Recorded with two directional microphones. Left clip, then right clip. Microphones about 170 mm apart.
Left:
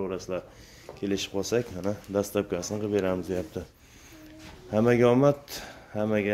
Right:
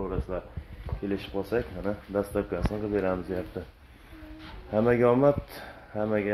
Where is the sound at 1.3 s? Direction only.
35° left (ahead or behind).